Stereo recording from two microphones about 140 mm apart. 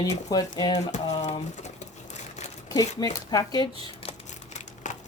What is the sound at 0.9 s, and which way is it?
Sewing machine, 55° left (ahead or behind).